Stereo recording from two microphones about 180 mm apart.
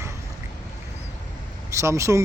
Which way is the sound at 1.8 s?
15° right (ahead or behind).